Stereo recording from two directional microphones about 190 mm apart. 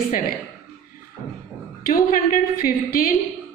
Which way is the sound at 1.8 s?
50° left (ahead or behind).